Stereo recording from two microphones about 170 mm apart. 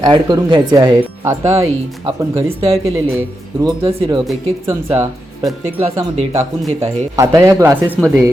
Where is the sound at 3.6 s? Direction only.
30° right (ahead or behind).